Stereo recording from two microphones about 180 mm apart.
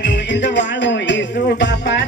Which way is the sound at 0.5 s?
80° left.